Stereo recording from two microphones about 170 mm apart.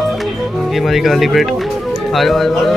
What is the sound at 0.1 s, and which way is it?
Music, centre (ahead or behind).